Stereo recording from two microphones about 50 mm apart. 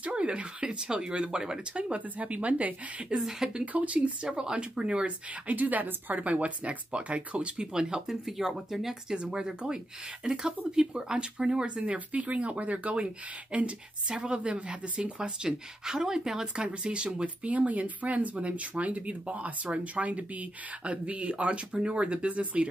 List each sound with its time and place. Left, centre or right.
0.0 s speech: right
3.1 s speech: centre
3.7 s speech: right
4.3 s speech: centre
16.6 s speech: right